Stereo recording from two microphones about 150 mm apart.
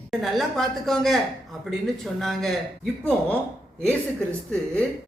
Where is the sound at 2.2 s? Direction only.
Centre (ahead or behind).